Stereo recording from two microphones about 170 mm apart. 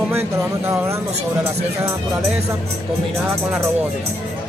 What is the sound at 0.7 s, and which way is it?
Speech, 15° right (ahead or behind).